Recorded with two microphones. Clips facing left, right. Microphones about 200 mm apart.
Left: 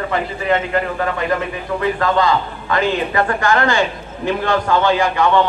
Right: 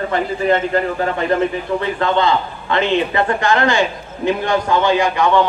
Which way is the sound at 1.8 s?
25° right (ahead or behind).